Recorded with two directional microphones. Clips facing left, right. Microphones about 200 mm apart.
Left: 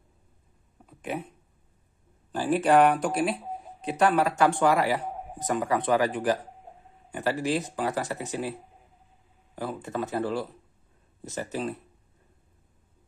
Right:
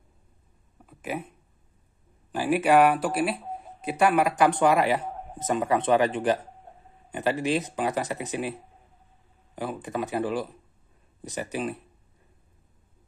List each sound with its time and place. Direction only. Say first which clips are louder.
0.8 s speech: even; 5° right (ahead or behind)
2.3 s speech: right 1 dB; 10° right (ahead or behind)
3.4 s a sound: even; 5° left (ahead or behind)
3.8 s speech: right 1 dB; 10° right (ahead or behind)
9.6 s speech: right 1 dB; 15° right (ahead or behind)